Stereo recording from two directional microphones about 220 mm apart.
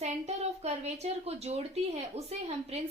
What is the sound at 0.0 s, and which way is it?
A woman's voice, 30° right (ahead or behind).